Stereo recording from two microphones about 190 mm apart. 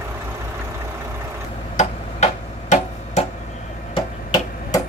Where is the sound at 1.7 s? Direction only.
35° left (ahead or behind).